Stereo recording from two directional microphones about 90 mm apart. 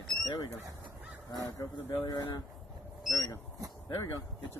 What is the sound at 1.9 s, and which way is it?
Speech, 55° left (ahead or behind).